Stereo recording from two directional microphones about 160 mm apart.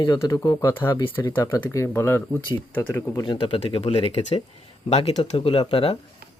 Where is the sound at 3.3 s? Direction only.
35° left (ahead or behind).